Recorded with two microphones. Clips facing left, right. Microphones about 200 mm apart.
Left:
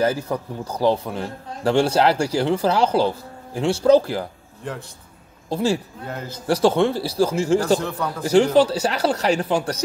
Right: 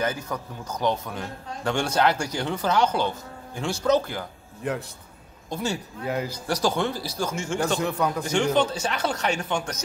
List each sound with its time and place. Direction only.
0.0 s a man's voice: 30° left (ahead or behind)
5.5 s a man's voice: 30° left (ahead or behind)
6.0 s a man's voice: 10° right (ahead or behind)
6.4 s a man's voice: 25° left (ahead or behind)
7.8 s a man's voice: 10° right (ahead or behind)
8.5 s a man's voice: 35° left (ahead or behind)